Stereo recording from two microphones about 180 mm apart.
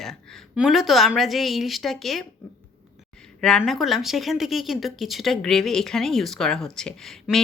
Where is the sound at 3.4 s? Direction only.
5° left (ahead or behind).